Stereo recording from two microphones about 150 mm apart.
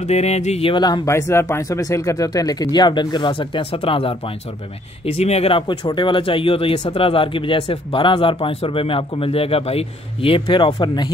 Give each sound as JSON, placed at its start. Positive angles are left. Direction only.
{"t": 0.0, "sound": "speech", "side_deg": 45}
{"t": 1.0, "sound": "speech", "side_deg": 20}